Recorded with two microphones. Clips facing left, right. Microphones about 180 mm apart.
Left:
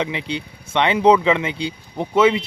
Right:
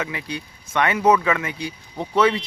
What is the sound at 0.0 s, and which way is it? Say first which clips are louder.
Speech: left 4 dB; 25° left (ahead or behind).